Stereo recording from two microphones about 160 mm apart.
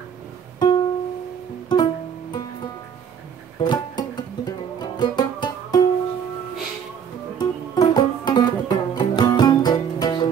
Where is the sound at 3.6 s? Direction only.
25° left (ahead or behind).